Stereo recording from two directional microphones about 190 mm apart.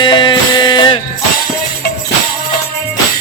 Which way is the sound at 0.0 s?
25° left (ahead or behind).